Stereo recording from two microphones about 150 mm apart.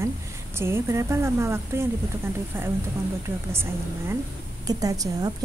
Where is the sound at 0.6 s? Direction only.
15° right (ahead or behind).